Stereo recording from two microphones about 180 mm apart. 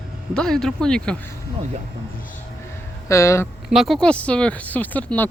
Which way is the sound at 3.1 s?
15° left (ahead or behind).